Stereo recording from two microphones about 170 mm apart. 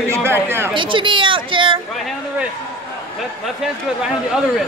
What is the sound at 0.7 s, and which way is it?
Speech, 30° right (ahead or behind).